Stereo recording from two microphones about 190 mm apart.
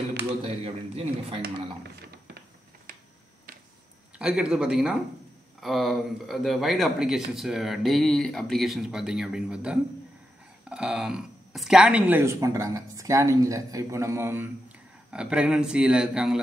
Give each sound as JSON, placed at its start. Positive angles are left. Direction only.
{"t": 0.1, "sound": "a sound", "side_deg": -55}
{"t": 1.4, "sound": "speech", "side_deg": -55}
{"t": 4.2, "sound": "speech", "side_deg": -5}